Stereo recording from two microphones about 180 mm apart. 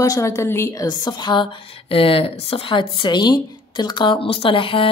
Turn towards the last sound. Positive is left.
turn(degrees=30)  # may be behind; listen again after turning